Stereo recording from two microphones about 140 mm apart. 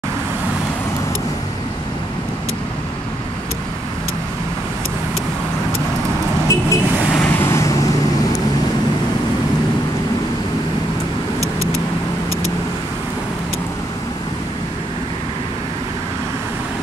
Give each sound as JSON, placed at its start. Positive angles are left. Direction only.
{"t": 6.4, "sound": "vehicle", "side_deg": 20}